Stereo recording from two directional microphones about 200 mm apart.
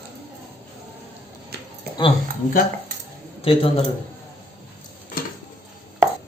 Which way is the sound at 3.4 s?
30° left (ahead or behind).